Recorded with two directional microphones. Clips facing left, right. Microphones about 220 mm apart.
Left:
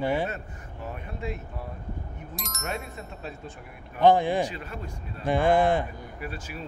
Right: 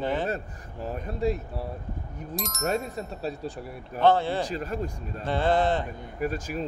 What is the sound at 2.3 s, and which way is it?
Speech, centre (ahead or behind).